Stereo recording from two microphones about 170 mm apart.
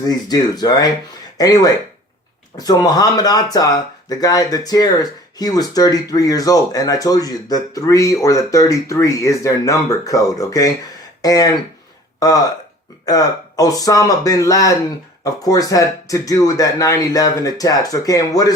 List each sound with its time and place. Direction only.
0.0 s speech: 20° left (ahead or behind)